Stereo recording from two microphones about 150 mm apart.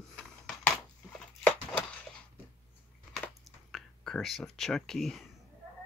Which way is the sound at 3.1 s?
Centre (ahead or behind).